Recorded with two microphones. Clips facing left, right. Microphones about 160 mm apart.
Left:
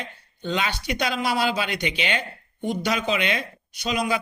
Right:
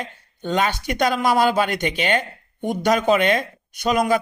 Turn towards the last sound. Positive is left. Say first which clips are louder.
# right 6 dB
turn(degrees=-50)  # may be behind; listen again after turning